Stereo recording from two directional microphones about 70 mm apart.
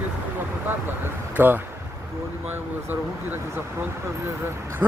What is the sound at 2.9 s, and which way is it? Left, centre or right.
Speech, right.